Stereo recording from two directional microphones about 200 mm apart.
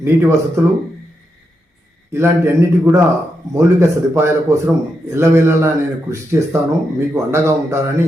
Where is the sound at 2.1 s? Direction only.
10° right (ahead or behind).